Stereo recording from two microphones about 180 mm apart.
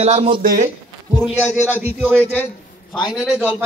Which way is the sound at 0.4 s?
55° right (ahead or behind).